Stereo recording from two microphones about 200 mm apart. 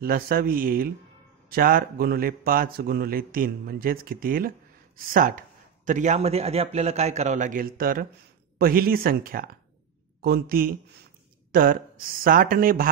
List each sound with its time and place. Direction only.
0.0 s a man's voice: 45° right (ahead or behind)